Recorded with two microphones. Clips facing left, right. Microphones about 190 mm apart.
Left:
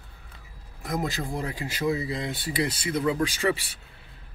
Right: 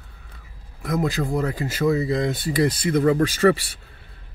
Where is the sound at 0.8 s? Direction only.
50° right (ahead or behind).